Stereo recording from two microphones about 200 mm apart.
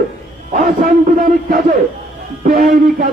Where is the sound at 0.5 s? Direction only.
45° right (ahead or behind).